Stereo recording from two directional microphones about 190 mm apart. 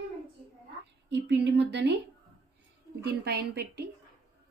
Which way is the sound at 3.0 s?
60° right (ahead or behind).